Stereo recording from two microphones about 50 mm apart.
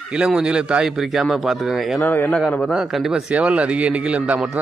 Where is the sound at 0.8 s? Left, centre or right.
Centre.